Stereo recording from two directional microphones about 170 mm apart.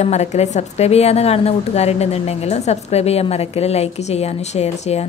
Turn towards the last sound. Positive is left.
turn(degrees=40)  # may be behind; listen again after turning